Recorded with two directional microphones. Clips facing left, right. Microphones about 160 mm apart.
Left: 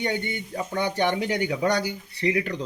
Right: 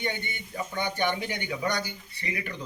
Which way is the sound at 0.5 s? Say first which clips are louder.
Left 4 dB; 70° left (ahead or behind).